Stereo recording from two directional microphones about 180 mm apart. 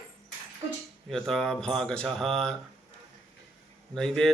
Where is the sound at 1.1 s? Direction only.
5° left (ahead or behind).